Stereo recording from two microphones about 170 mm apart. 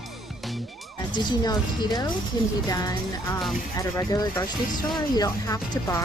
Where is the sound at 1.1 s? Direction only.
25° left (ahead or behind).